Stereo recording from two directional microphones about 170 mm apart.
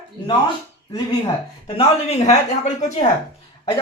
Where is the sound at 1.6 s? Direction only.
35° left (ahead or behind).